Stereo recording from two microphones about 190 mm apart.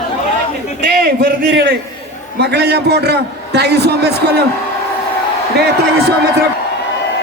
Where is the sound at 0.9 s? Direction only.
55° right (ahead or behind).